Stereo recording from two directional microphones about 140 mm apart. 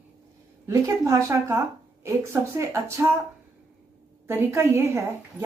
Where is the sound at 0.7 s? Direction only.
20° right (ahead or behind).